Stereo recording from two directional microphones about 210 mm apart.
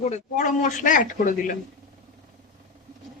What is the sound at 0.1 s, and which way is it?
Speech, 35° left (ahead or behind).